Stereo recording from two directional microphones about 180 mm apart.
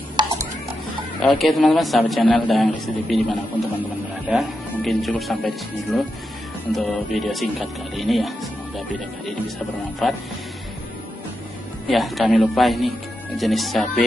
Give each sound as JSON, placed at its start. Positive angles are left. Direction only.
{"t": 0.1, "sound": "stir", "side_deg": -25}
{"t": 1.2, "sound": "a man's voice", "side_deg": 0}
{"t": 4.7, "sound": "a man's voice", "side_deg": 5}
{"t": 10.0, "sound": "a man's voice", "side_deg": 0}
{"t": 11.9, "sound": "a man's voice", "side_deg": 0}